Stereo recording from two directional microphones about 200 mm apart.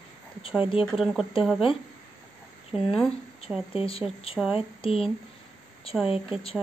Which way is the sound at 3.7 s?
30° left (ahead or behind).